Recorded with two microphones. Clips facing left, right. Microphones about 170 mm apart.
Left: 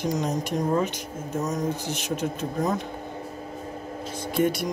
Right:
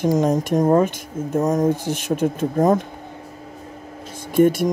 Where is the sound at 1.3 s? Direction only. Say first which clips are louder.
Right 9 dB; 50° right (ahead or behind).